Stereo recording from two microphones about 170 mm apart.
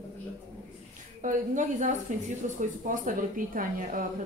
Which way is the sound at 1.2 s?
50° right (ahead or behind).